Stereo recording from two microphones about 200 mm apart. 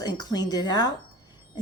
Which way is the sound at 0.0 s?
20° left (ahead or behind).